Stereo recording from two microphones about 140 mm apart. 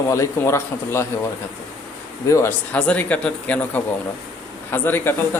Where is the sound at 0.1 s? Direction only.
20° left (ahead or behind).